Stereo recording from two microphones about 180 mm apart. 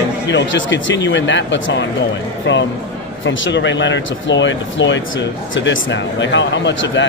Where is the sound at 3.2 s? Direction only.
90° left.